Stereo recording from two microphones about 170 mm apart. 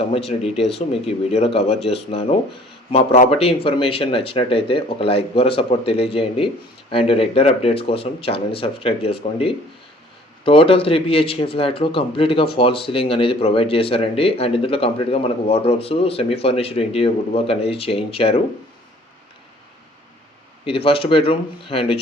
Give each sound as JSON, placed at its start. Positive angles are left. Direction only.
{"t": 0.4, "sound": "speech", "side_deg": 0}
{"t": 0.8, "sound": "speech", "side_deg": 35}
{"t": 20.7, "sound": "speech", "side_deg": 35}